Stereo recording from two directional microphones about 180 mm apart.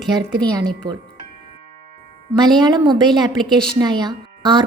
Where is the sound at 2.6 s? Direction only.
25° right (ahead or behind).